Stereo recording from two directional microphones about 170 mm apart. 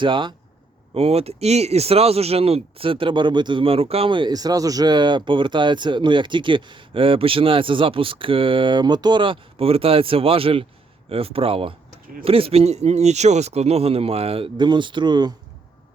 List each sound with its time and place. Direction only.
0.0 s speech: 30° right (ahead or behind)